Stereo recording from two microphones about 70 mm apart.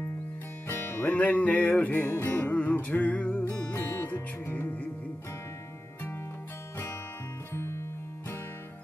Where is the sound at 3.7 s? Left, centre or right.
Left.